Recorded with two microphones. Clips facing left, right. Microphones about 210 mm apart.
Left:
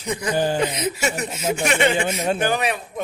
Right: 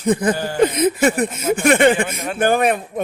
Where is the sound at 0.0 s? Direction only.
50° right (ahead or behind).